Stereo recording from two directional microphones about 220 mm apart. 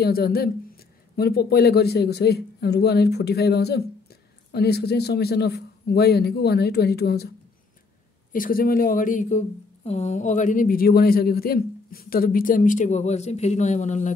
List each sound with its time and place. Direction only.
0.0 s speech: 45° left (ahead or behind)
8.3 s a man's voice: 40° left (ahead or behind)